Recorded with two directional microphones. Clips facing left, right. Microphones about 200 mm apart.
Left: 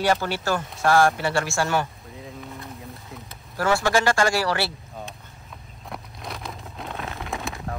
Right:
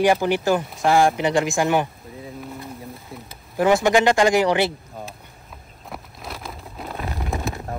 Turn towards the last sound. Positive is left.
turn(degrees=0)  # may be behind; listen again after turning